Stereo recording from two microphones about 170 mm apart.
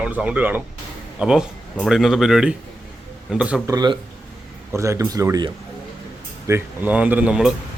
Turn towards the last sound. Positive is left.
turn(degrees=-5)  # may be behind; listen again after turning